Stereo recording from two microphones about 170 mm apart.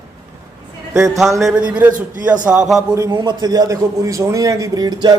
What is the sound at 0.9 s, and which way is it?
Speech, 20° right (ahead or behind).